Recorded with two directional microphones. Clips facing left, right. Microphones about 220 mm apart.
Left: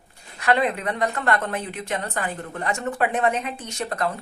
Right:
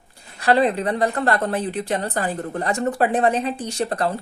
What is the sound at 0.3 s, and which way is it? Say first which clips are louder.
A woman's voice: right 4 dB; 35° right (ahead or behind).